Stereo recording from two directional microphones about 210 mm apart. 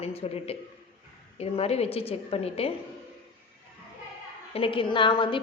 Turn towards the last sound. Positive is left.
turn(degrees=25)  # may be behind; listen again after turning